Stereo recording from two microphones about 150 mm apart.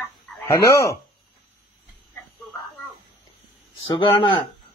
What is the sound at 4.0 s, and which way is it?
Speech, 30° left (ahead or behind).